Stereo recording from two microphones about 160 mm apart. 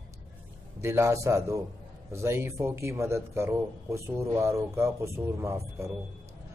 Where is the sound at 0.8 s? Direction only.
15° right (ahead or behind).